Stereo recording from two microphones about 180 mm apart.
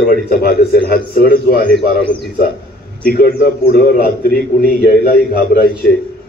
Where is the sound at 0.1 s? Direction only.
55° left (ahead or behind).